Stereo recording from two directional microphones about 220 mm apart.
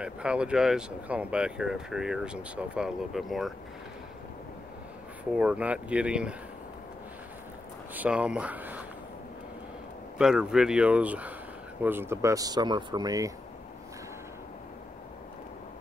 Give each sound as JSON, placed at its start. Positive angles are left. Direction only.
{"t": 0.0, "sound": "speech", "side_deg": -5}
{"t": 5.3, "sound": "speech", "side_deg": -5}
{"t": 7.9, "sound": "speech", "side_deg": -5}
{"t": 10.1, "sound": "speech", "side_deg": -5}